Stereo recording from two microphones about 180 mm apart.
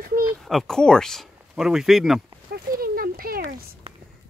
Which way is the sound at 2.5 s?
55° right (ahead or behind).